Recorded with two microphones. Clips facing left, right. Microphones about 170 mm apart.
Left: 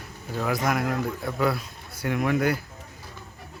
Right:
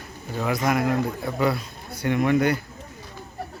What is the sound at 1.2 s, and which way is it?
A man's voice, centre (ahead or behind).